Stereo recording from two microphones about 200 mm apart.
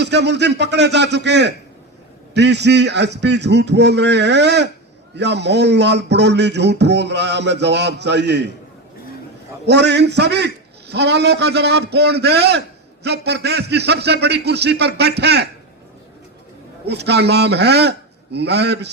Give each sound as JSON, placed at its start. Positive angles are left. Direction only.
{"t": 0.0, "sound": "a man's voice", "side_deg": -55}
{"t": 9.6, "sound": "a man's voice", "side_deg": -60}
{"t": 16.8, "sound": "a man's voice", "side_deg": -55}